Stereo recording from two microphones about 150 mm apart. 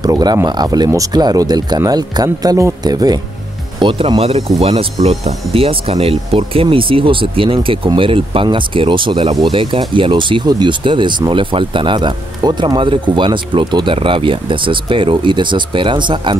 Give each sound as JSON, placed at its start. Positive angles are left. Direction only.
{"t": 0.0, "sound": "speech", "side_deg": -25}